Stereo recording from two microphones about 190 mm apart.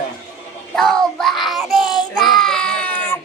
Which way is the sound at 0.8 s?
Centre (ahead or behind).